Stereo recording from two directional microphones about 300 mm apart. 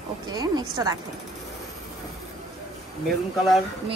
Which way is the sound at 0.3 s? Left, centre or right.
Centre.